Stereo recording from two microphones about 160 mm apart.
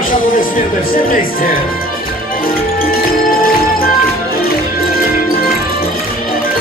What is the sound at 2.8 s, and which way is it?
Music, 65° left (ahead or behind).